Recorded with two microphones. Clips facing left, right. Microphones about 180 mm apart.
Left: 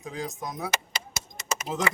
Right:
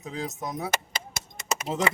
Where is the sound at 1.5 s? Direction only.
25° right (ahead or behind).